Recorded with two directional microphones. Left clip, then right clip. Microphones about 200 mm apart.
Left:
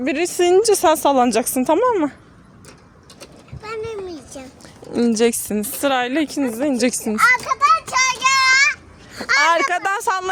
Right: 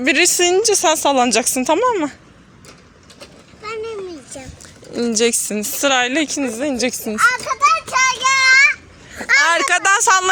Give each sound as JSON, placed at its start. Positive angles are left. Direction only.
{"t": 0.0, "sound": "speech", "side_deg": 5}
{"t": 0.4, "sound": "speech", "side_deg": 25}
{"t": 4.4, "sound": "a sound", "side_deg": 30}
{"t": 4.9, "sound": "speech", "side_deg": 25}
{"t": 9.2, "sound": "speech", "side_deg": 20}